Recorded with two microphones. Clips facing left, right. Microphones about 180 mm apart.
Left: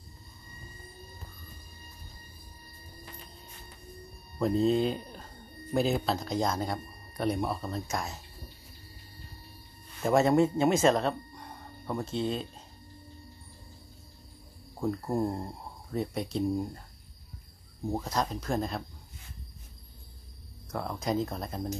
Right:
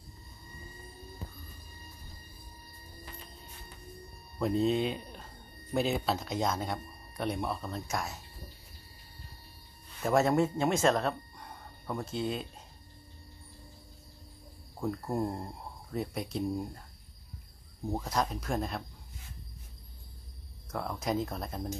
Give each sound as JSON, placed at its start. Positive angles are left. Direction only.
{"t": 4.4, "sound": "speech", "side_deg": 0}
{"t": 10.0, "sound": "speech", "side_deg": 0}
{"t": 14.8, "sound": "speech", "side_deg": 5}
{"t": 18.0, "sound": "speech", "side_deg": 0}
{"t": 20.7, "sound": "speech", "side_deg": 0}